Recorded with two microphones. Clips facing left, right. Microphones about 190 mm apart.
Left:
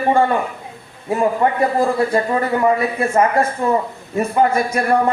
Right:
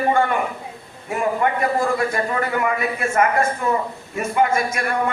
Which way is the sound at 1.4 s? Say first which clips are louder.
Left 2 dB; 30° left (ahead or behind).